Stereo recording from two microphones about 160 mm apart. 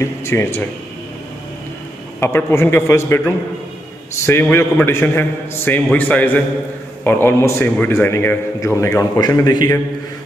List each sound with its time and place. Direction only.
0.0 s a man's voice: 15° left (ahead or behind)
2.1 s a man's voice: 15° left (ahead or behind)